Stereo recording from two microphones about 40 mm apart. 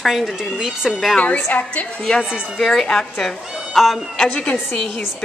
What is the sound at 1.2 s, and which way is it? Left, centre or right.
Speech, left.